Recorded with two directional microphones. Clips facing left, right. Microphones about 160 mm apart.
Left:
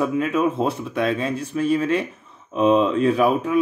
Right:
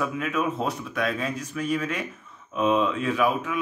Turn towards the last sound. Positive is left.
turn(degrees=35)  # may be behind; listen again after turning